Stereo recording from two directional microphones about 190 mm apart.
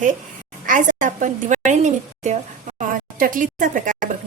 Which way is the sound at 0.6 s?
40° right (ahead or behind).